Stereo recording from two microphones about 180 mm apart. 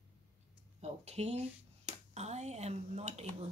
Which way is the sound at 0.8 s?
35° right (ahead or behind).